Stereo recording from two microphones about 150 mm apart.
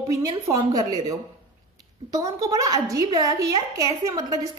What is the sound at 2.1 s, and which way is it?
A woman's voice, 25° right (ahead or behind).